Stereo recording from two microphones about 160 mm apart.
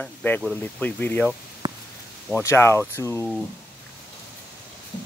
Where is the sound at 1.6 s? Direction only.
25° right (ahead or behind).